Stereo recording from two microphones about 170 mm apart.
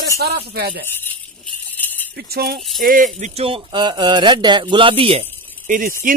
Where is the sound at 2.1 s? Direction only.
70° right (ahead or behind).